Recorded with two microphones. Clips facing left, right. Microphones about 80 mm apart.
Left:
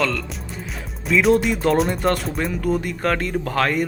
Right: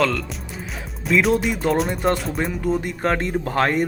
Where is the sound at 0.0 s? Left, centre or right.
Centre.